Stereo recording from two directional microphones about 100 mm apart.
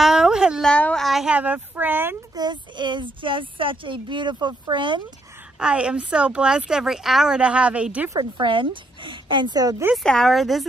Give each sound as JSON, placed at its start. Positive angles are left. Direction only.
{"t": 0.0, "sound": "a sound", "side_deg": -5}
{"t": 0.7, "sound": "a child's voice", "side_deg": 10}
{"t": 1.0, "sound": "speech", "side_deg": 0}
{"t": 1.3, "sound": "speech", "side_deg": -15}
{"t": 2.3, "sound": "speech", "side_deg": -45}
{"t": 5.6, "sound": "speech", "side_deg": -10}
{"t": 8.4, "sound": "speech", "side_deg": -55}
{"t": 10.0, "sound": "speech", "side_deg": 5}